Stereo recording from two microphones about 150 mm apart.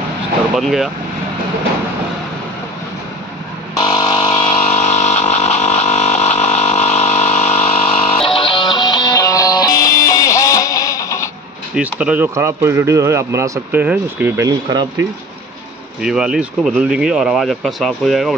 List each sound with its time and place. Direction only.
0.6 s speech: centre (ahead or behind)
3.8 s a sound: 35° left (ahead or behind); by 11.2 s 20° left (ahead or behind)
11.7 s speech: 10° right (ahead or behind); by 15.0 s 25° right (ahead or behind)
16.0 s speech: 5° right (ahead or behind)